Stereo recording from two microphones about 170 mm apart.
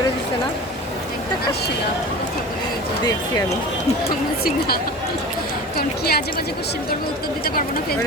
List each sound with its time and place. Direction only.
5.7 s a woman's voice: 65° left (ahead or behind)